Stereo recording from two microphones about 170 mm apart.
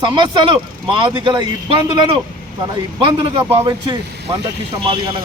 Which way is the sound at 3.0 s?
30° right (ahead or behind).